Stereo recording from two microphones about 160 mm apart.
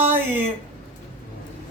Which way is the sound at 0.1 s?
15° right (ahead or behind).